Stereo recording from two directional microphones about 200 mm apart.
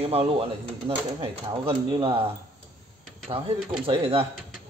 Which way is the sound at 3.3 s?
25° right (ahead or behind).